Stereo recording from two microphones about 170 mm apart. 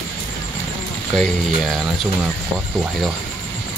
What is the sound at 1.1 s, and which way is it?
Speech, 5° left (ahead or behind).